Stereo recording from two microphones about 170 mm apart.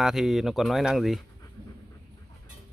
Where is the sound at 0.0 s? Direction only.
Centre (ahead or behind).